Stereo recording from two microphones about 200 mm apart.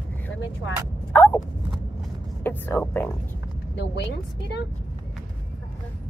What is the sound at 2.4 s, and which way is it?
Speech, 10° left (ahead or behind).